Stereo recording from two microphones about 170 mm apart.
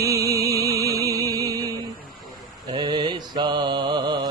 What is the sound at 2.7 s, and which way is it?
Mantra, 25° right (ahead or behind).